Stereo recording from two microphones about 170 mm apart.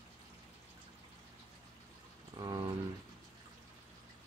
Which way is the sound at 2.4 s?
25° right (ahead or behind).